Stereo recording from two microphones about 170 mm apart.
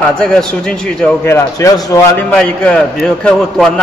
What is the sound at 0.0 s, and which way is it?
A man's voice, 5° left (ahead or behind).